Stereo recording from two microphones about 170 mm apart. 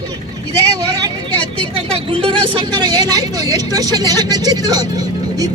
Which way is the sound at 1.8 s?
35° right (ahead or behind).